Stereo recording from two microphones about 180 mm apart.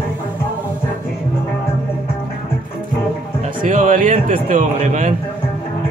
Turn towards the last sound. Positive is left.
turn(degrees=-45)  # may be behind; listen again after turning